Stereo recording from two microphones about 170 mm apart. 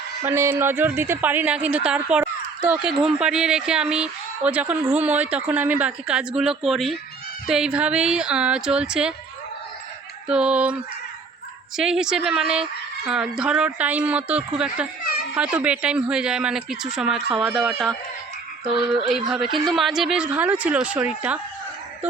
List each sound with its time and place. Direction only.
0.2 s speech: 15° right (ahead or behind)
10.2 s speech: 5° right (ahead or behind)
11.8 s speech: 5° right (ahead or behind)
18.7 s speech: 30° right (ahead or behind)
19.5 s speech: centre (ahead or behind)